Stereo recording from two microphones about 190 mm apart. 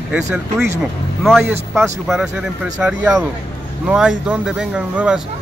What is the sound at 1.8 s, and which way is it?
Speech, centre (ahead or behind).